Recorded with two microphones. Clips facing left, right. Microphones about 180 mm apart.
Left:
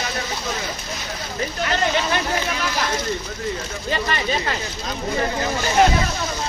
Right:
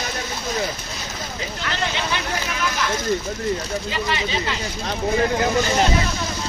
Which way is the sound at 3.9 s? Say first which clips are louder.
Left 4 dB; 50° left (ahead or behind).